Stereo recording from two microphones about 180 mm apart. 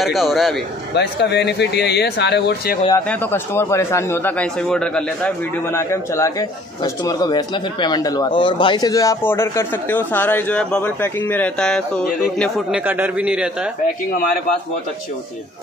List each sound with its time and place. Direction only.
0.0 s speech: centre (ahead or behind)
0.9 s speech: 70° left (ahead or behind)
3.1 s speech: 10° left (ahead or behind)
12.8 s a man's voice: 10° right (ahead or behind)